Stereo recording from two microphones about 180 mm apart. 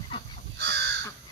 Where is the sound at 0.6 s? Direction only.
70° right (ahead or behind).